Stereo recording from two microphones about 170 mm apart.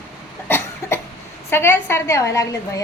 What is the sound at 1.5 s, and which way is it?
A woman's voice, 15° left (ahead or behind).